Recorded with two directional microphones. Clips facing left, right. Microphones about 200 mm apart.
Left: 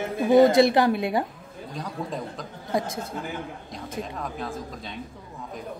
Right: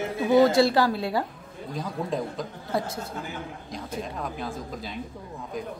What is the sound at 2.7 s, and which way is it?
Speech, 15° left (ahead or behind).